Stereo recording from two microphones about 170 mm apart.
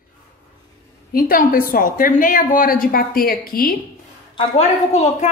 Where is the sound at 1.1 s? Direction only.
55° left (ahead or behind).